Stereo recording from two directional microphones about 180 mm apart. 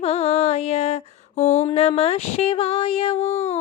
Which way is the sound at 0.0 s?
35° left (ahead or behind).